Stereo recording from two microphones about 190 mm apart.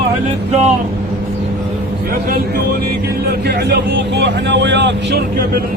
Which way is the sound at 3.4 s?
60° right (ahead or behind).